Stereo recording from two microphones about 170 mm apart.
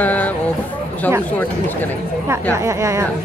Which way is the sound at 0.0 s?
10° left (ahead or behind).